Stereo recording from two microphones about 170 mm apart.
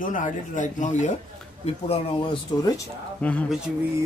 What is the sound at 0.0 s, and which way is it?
Speech, 50° left (ahead or behind).